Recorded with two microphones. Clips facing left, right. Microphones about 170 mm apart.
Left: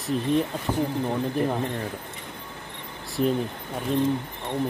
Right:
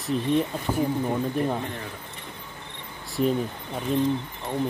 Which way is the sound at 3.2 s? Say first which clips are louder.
Even; centre (ahead or behind).